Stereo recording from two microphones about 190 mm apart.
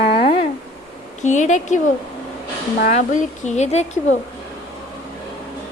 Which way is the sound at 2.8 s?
40° left (ahead or behind).